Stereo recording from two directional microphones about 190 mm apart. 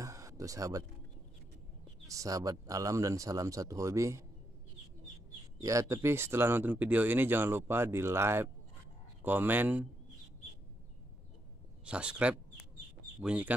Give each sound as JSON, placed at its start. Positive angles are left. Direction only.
{"t": 0.0, "sound": "a sound", "side_deg": -15}
{"t": 2.0, "sound": "speech", "side_deg": -15}
{"t": 5.6, "sound": "speech", "side_deg": -15}
{"t": 11.8, "sound": "speech", "side_deg": -5}